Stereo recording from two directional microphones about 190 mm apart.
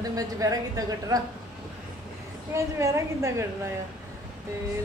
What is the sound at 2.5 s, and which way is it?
Speech, 15° right (ahead or behind).